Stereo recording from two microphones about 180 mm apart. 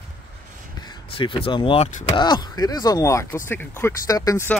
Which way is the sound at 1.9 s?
45° left (ahead or behind).